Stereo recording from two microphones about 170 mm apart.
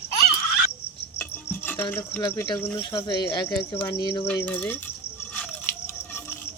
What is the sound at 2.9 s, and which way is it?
Speech, 25° left (ahead or behind).